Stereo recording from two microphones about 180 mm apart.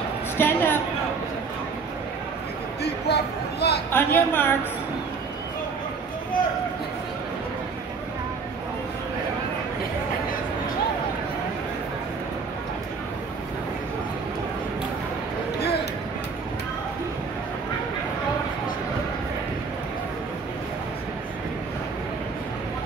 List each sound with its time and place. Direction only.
0.4 s speech: 10° left (ahead or behind)
2.8 s speech: 65° left (ahead or behind)
3.9 s speech: 10° left (ahead or behind)